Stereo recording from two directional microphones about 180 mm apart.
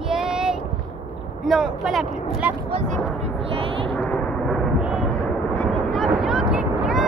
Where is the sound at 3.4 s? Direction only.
30° right (ahead or behind).